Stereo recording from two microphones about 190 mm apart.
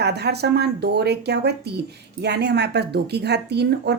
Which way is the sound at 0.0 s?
60° right (ahead or behind).